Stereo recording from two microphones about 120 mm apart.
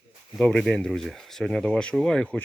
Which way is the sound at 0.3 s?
5° left (ahead or behind).